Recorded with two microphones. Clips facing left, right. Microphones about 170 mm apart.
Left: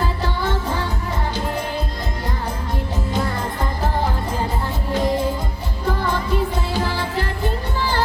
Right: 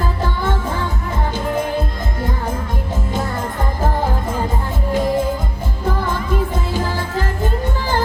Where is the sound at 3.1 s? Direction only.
45° right (ahead or behind).